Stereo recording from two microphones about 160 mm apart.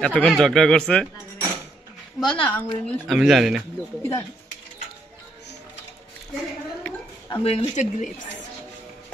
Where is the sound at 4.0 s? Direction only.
20° left (ahead or behind).